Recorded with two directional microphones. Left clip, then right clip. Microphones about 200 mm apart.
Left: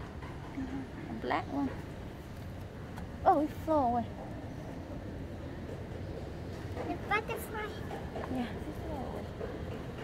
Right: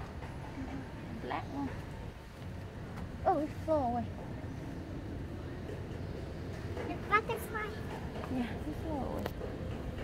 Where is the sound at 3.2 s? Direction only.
20° left (ahead or behind).